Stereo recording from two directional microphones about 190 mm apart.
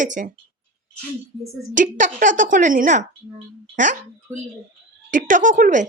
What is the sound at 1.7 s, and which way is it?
A woman's voice, 40° right (ahead or behind).